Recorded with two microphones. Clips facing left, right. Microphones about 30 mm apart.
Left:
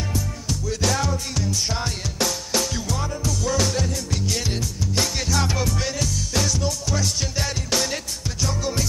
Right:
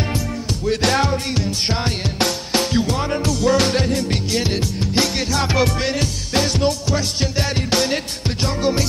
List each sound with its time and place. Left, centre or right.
0.7 s music: right
6.9 s music: right